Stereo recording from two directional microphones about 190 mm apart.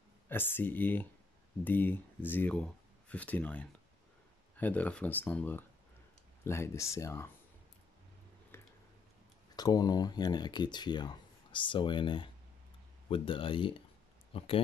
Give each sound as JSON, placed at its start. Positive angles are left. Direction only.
{"t": 0.3, "sound": "speech", "side_deg": 10}
{"t": 8.5, "sound": "a sound", "side_deg": 15}
{"t": 9.6, "sound": "speech", "side_deg": 20}